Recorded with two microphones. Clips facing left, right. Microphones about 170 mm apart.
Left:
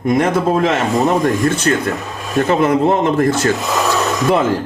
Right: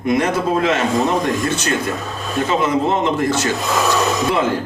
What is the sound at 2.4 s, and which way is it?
Speech, 55° left (ahead or behind).